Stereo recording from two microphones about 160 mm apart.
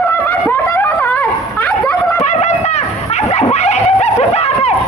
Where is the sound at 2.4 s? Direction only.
45° left (ahead or behind).